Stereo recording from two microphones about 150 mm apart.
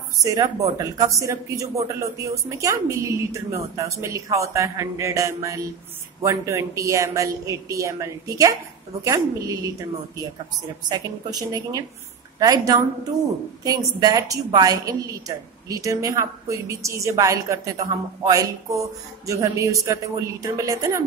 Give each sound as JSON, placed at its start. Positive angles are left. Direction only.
{"t": 0.2, "sound": "a woman's voice", "side_deg": -25}